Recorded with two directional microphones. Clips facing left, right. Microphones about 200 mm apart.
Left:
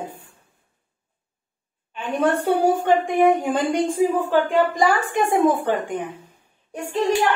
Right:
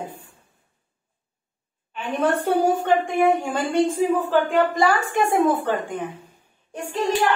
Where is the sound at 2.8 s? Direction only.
15° left (ahead or behind).